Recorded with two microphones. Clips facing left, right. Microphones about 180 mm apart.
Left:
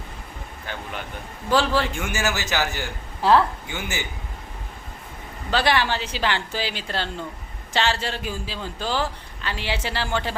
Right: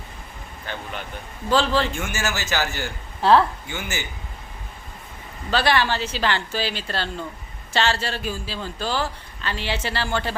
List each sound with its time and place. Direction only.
0.7 s a man's voice: 10° left (ahead or behind)
5.5 s a man's voice: 15° left (ahead or behind)